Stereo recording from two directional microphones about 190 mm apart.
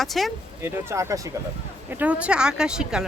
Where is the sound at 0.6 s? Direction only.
15° right (ahead or behind).